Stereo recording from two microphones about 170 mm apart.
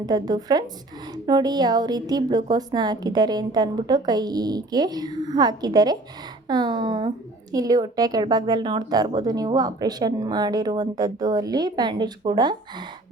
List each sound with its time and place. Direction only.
0.0 s speech: 25° right (ahead or behind)